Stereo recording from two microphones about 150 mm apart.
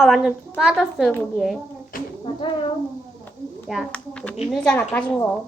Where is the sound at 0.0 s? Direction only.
Centre (ahead or behind).